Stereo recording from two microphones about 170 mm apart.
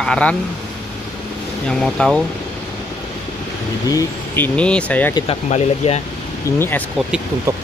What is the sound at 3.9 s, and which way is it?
Speech, 15° left (ahead or behind).